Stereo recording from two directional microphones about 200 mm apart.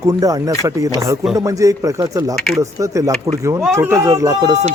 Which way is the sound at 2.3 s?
Centre (ahead or behind).